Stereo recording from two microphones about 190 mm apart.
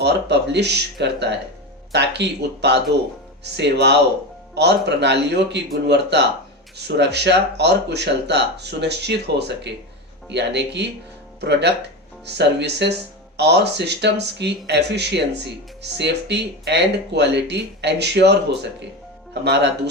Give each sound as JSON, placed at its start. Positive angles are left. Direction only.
{"t": 0.0, "sound": "speech", "side_deg": -65}